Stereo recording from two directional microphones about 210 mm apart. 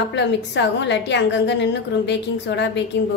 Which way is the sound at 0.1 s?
55° left (ahead or behind).